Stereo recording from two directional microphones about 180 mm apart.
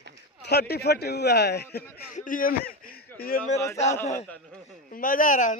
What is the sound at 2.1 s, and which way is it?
Speech, 50° left (ahead or behind).